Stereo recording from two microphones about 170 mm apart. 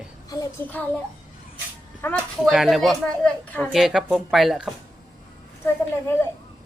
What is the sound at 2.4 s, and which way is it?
A woman's voice, centre (ahead or behind).